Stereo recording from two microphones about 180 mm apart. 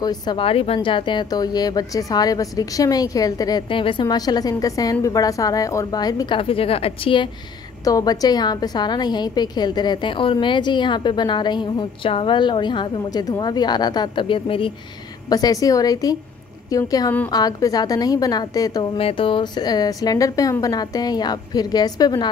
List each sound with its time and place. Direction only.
0.0 s a woman's voice: 25° left (ahead or behind)
7.8 s a woman's voice: 20° left (ahead or behind)